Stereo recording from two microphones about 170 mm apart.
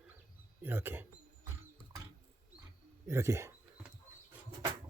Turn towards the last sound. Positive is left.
turn(degrees=-15)  # may be behind; listen again after turning